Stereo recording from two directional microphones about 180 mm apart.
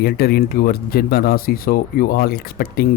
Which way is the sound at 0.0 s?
60° left (ahead or behind).